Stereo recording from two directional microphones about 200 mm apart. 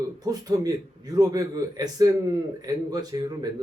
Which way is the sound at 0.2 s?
20° right (ahead or behind).